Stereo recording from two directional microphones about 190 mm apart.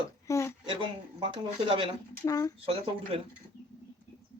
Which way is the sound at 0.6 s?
25° right (ahead or behind).